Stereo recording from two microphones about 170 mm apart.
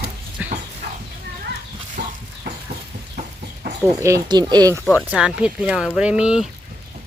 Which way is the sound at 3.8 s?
20° right (ahead or behind).